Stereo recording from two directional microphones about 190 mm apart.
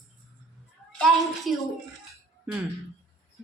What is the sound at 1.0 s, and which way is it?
Speech, centre (ahead or behind).